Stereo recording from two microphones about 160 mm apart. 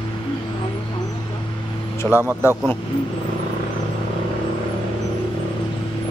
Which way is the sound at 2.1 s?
15° right (ahead or behind).